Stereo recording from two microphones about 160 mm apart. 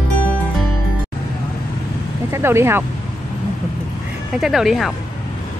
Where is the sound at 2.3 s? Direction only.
15° right (ahead or behind).